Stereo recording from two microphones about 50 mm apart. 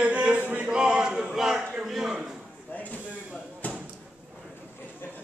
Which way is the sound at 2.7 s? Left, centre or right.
Left.